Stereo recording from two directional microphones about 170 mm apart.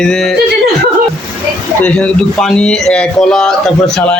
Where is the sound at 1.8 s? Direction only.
5° left (ahead or behind).